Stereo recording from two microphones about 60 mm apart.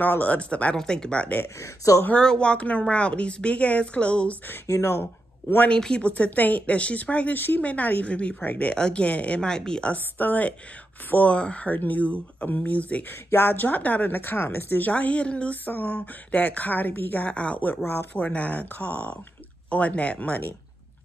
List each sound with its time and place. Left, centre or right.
0.0 s a woman's voice: left
4.6 s speech: left
5.7 s a woman's voice: centre
8.7 s speech: centre
10.1 s a woman's voice: left
11.7 s a woman's voice: left
13.3 s a woman's voice: left
17.3 s a woman's voice: left
17.8 s a woman's voice: left